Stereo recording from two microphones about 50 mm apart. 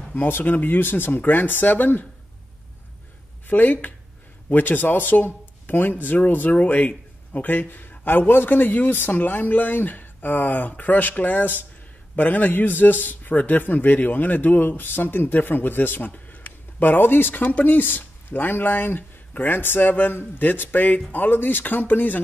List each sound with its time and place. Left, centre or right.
0.1 s a man's voice: left
3.4 s a man's voice: left